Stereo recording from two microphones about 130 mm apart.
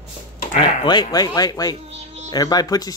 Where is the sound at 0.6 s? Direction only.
35° left (ahead or behind).